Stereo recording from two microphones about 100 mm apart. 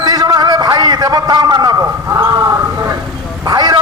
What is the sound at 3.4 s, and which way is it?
Vehicle, 40° right (ahead or behind).